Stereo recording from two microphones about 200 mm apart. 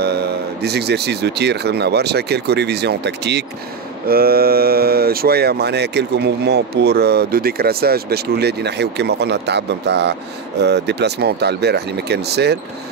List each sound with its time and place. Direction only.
0.0 s speech: 55° right (ahead or behind)